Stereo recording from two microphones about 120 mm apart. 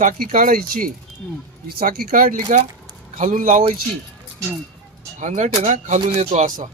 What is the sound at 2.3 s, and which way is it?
Speech, 90° right.